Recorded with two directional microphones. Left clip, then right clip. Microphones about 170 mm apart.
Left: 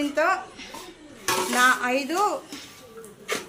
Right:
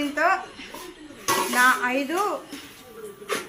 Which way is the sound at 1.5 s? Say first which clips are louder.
Right 1 dB; 70° left (ahead or behind).